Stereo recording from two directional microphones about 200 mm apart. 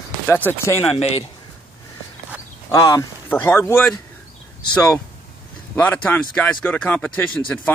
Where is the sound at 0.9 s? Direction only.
30° left (ahead or behind).